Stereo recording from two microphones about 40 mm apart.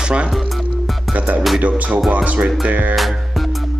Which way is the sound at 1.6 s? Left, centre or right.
Right.